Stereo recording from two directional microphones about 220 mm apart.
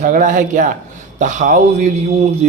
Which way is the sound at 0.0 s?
35° right (ahead or behind).